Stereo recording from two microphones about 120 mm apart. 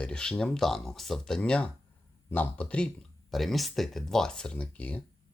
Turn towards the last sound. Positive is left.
turn(degrees=10)  # may be behind; listen again after turning